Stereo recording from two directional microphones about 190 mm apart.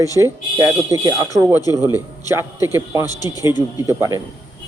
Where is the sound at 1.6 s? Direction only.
20° left (ahead or behind).